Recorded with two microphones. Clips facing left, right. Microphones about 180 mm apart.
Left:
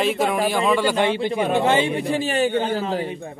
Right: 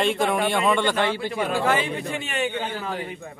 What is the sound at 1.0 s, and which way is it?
A man's voice, 20° left (ahead or behind).